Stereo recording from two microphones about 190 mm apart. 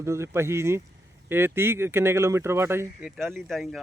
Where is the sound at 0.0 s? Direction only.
15° right (ahead or behind).